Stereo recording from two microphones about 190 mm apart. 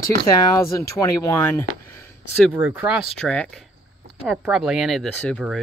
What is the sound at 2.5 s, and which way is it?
Speech, 10° right (ahead or behind).